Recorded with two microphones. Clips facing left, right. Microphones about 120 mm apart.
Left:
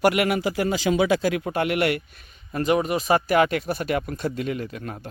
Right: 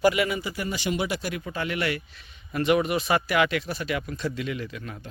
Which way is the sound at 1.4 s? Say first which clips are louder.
Left 6 dB; 60° left (ahead or behind).